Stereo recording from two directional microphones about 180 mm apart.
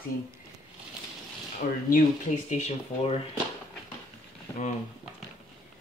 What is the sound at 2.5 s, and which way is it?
Speech, 35° left (ahead or behind).